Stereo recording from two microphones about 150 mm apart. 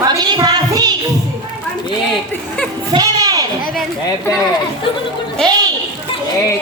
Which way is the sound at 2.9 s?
25° right (ahead or behind).